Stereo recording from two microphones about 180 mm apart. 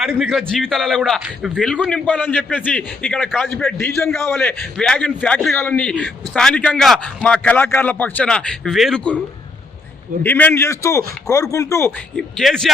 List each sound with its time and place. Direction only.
0.0 s a man's voice: centre (ahead or behind)
10.2 s a man's voice: 10° left (ahead or behind)
12.1 s a man's voice: centre (ahead or behind)